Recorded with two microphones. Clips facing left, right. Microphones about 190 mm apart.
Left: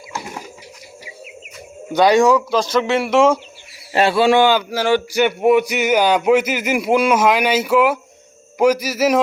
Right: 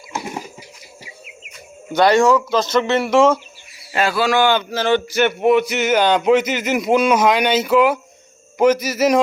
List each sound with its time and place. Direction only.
1.9 s speech: 15° left (ahead or behind)
3.9 s a man's voice: 30° left (ahead or behind)
4.4 s speech: 10° left (ahead or behind)